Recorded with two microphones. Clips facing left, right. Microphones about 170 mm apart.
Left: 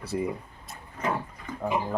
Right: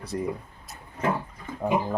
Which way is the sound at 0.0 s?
5° left (ahead or behind).